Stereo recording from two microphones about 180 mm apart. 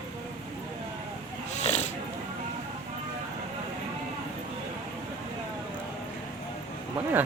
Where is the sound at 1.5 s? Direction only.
40° left (ahead or behind).